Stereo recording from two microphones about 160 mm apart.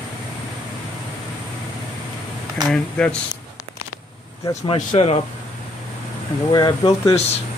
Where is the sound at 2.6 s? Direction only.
5° left (ahead or behind).